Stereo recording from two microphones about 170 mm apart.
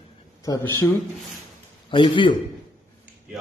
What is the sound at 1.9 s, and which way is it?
Speech, 30° left (ahead or behind).